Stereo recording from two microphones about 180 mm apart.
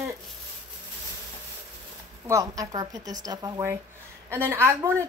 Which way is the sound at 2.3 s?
20° right (ahead or behind).